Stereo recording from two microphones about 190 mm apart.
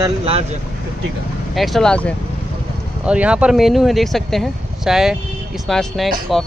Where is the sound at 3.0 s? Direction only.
5° right (ahead or behind).